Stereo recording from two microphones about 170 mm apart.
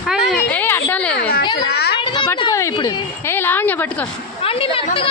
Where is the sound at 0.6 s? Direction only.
10° left (ahead or behind).